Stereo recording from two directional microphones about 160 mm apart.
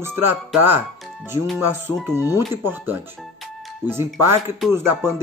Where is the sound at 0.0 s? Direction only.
15° right (ahead or behind).